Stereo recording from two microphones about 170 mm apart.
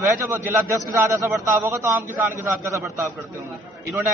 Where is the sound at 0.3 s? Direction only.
15° right (ahead or behind).